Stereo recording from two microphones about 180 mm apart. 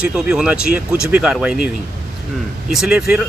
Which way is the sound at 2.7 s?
5° right (ahead or behind).